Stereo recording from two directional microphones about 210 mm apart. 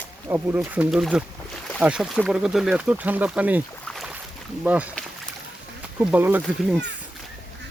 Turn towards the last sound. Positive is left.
turn(degrees=-5)  # may be behind; listen again after turning